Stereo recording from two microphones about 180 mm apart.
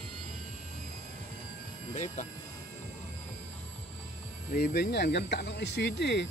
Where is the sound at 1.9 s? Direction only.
45° left (ahead or behind).